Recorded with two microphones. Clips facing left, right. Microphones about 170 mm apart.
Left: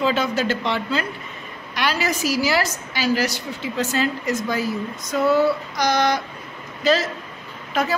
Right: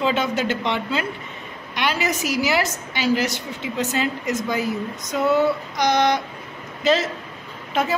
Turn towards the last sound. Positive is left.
turn(degrees=-25)  # may be behind; listen again after turning